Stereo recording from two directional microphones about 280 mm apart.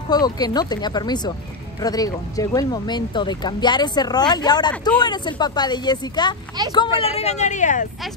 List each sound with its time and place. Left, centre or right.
0.1 s speech: centre